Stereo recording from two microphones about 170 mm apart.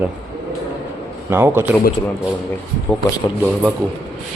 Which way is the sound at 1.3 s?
15° right (ahead or behind).